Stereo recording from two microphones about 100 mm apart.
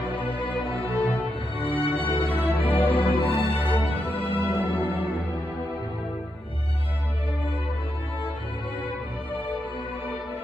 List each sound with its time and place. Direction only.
1.6 s music: 80° left